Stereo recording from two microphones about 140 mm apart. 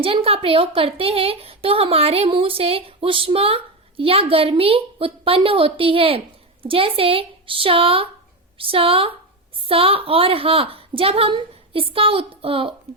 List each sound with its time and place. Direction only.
0.0 s a woman's voice: 40° right (ahead or behind)